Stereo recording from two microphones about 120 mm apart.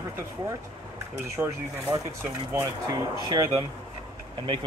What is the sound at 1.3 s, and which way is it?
Speech, 25° right (ahead or behind).